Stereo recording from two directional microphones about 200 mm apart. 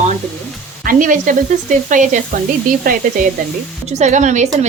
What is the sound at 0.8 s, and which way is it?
A woman's voice, 45° right (ahead or behind).